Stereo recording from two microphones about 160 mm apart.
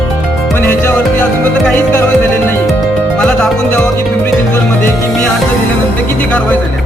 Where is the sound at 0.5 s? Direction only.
15° left (ahead or behind).